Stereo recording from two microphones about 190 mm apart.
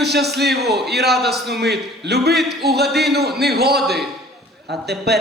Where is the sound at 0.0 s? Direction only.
60° right (ahead or behind).